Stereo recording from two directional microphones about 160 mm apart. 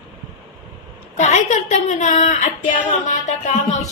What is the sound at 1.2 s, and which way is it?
A woman's voice, 50° left (ahead or behind).